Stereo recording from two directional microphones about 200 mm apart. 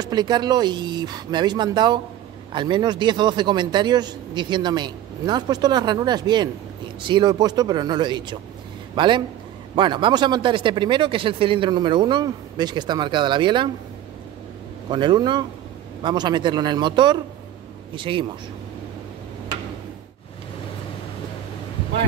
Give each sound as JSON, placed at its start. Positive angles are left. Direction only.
{"t": 0.0, "sound": "a man's voice", "side_deg": -20}
{"t": 14.9, "sound": "a man's voice", "side_deg": -25}